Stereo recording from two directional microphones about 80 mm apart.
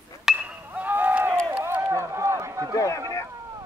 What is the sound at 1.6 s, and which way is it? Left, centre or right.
Run, right.